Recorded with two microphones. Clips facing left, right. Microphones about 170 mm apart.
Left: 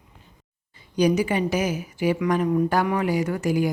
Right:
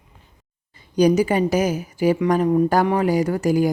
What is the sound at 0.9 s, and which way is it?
A woman's voice, 40° right (ahead or behind).